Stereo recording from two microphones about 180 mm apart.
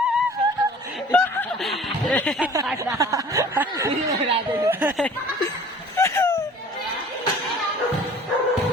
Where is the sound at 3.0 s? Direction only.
15° right (ahead or behind).